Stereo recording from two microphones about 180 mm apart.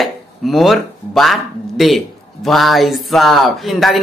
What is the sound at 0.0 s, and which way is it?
Speech, centre (ahead or behind).